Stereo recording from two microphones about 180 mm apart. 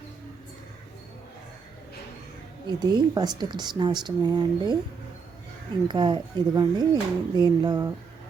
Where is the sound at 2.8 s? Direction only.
25° right (ahead or behind).